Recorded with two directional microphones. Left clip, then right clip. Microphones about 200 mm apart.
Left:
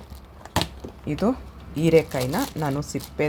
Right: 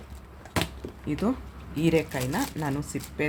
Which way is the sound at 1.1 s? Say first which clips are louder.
Left 5 dB; 25° left (ahead or behind).